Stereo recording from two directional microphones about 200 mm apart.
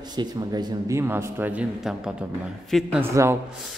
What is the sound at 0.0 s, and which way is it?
A man's voice, 20° right (ahead or behind).